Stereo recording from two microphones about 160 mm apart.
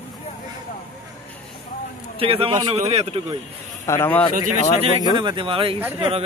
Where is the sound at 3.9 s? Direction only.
15° left (ahead or behind).